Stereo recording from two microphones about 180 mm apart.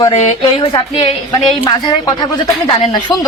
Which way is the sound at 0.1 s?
40° left (ahead or behind).